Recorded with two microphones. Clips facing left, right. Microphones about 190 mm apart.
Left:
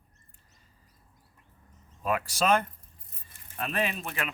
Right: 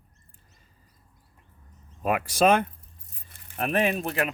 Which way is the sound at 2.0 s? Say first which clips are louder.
Right 6 dB; 60° right (ahead or behind).